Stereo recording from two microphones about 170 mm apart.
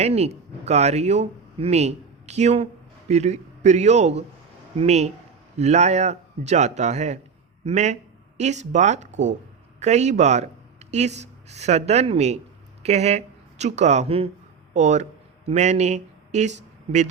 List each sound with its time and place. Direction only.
0.0 s a man's voice: 40° right (ahead or behind)